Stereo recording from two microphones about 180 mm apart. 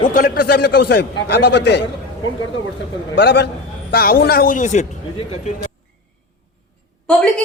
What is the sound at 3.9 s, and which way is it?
Speech, 55° left (ahead or behind).